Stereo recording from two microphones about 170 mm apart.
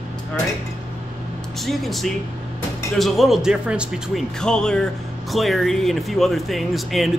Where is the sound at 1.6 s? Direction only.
Centre (ahead or behind).